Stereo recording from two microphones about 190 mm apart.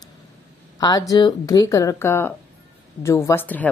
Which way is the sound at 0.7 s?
20° left (ahead or behind).